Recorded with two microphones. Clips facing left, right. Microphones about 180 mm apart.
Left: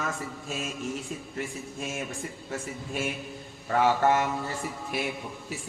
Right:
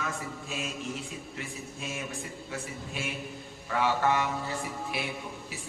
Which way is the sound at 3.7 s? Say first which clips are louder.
Left 4 dB; 45° left (ahead or behind).